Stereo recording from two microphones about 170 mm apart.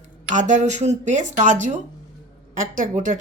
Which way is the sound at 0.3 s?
45° right (ahead or behind).